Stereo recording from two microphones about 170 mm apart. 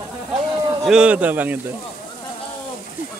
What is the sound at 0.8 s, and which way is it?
Speech, 5° right (ahead or behind).